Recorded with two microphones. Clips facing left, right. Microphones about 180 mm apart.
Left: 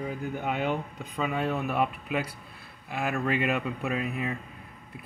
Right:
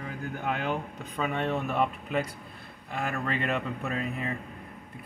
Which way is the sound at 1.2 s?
5° left (ahead or behind).